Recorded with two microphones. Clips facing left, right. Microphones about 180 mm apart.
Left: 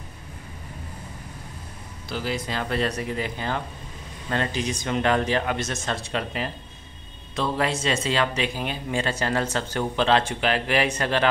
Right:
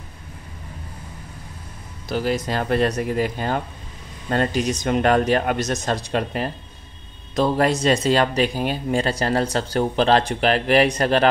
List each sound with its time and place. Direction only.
2.0 s speech: 50° right (ahead or behind)